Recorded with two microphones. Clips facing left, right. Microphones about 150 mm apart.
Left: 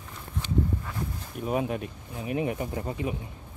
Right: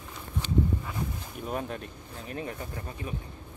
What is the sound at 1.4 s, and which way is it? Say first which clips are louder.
Speech: left 6 dB; 5° left (ahead or behind).